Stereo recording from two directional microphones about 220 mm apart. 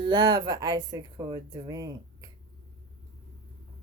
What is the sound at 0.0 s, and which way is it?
Speech, 20° right (ahead or behind).